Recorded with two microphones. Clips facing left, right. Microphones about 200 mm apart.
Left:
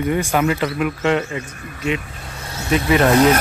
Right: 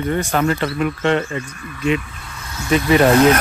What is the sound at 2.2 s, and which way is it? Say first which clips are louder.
Vehicle: left 1 dB; 35° left (ahead or behind).